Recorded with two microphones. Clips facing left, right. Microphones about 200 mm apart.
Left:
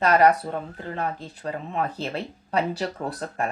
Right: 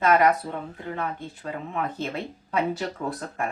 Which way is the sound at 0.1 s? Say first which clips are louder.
Left 2 dB; 35° left (ahead or behind).